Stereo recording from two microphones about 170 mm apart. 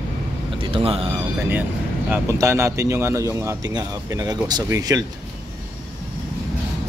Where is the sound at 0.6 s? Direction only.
35° right (ahead or behind).